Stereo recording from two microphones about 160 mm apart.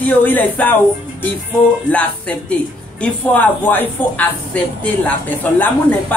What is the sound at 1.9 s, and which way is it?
Speech, 10° left (ahead or behind).